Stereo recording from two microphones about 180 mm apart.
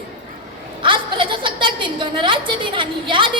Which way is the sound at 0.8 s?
30° right (ahead or behind).